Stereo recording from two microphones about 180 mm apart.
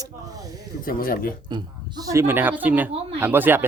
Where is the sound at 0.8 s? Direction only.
55° left (ahead or behind).